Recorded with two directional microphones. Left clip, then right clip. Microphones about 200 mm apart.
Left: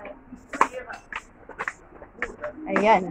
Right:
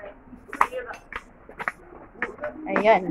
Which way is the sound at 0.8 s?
25° right (ahead or behind).